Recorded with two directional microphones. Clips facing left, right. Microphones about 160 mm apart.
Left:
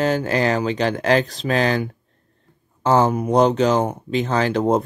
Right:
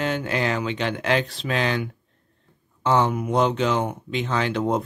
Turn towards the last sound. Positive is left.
turn(degrees=40)  # may be behind; listen again after turning